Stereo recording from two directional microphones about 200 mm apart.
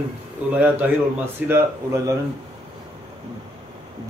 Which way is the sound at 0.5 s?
5° right (ahead or behind).